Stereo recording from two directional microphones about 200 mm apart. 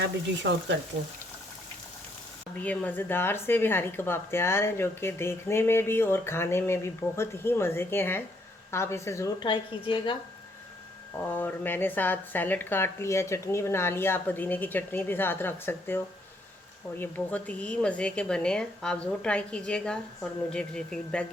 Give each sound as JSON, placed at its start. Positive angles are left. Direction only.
{"t": 2.6, "sound": "speech", "side_deg": 10}
{"t": 11.2, "sound": "speech", "side_deg": 10}
{"t": 17.0, "sound": "a woman's voice", "side_deg": 10}